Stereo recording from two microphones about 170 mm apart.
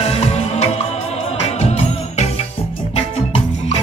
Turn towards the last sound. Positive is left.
turn(degrees=35)  # may be behind; listen again after turning